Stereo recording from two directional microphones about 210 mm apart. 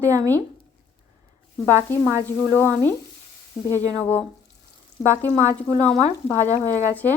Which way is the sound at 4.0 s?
10° left (ahead or behind).